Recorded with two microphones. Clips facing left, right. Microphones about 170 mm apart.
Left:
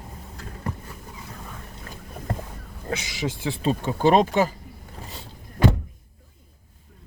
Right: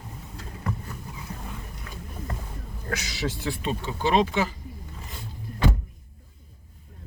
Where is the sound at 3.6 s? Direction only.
45° left (ahead or behind).